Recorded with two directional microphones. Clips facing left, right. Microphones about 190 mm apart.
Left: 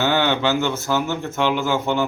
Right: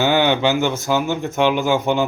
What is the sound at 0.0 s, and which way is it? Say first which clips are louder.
Speech: right 3 dB; 15° right (ahead or behind).